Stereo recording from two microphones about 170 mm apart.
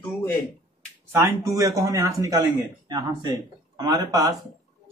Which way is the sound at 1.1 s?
15° right (ahead or behind).